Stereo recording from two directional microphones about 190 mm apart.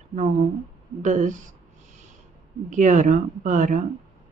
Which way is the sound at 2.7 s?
40° right (ahead or behind).